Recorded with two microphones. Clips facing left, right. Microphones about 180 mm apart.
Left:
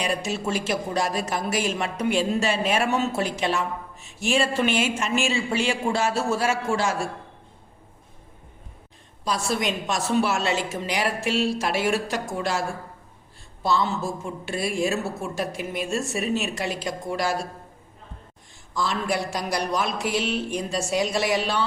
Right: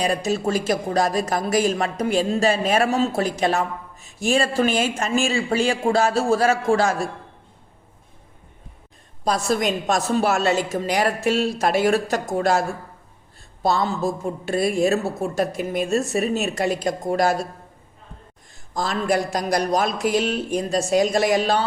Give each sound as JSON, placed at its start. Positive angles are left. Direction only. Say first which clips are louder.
{"t": 0.0, "sound": "a woman's voice", "louder": "right 5 dB", "side_deg": -40}
{"t": 9.2, "sound": "a woman's voice", "louder": "right 4 dB", "side_deg": -45}
{"t": 18.7, "sound": "speech", "louder": "right 4 dB", "side_deg": -45}